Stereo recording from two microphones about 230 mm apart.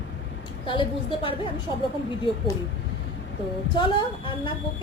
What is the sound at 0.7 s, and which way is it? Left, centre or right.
Speech, left.